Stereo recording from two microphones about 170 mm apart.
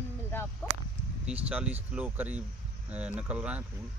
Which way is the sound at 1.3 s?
10° right (ahead or behind).